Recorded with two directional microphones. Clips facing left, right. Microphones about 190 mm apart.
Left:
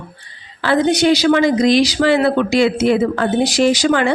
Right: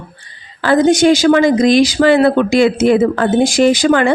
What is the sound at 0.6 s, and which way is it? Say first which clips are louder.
A woman's voice: right 4 dB; 45° right (ahead or behind).